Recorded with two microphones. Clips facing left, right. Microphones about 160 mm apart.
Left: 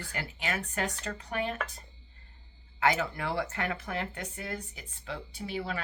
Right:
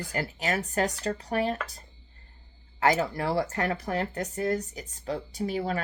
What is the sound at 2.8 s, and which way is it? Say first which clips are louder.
Speech: right 4 dB; 40° right (ahead or behind).